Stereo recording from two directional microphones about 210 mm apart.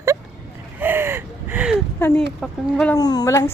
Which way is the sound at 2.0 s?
10° left (ahead or behind).